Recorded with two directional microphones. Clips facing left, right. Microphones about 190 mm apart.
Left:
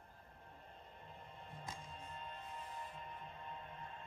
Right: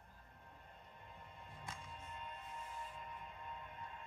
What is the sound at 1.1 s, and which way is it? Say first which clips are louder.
Music: left 2 dB; 30° left (ahead or behind).